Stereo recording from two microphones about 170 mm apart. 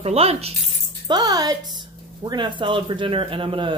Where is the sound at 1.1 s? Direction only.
25° right (ahead or behind).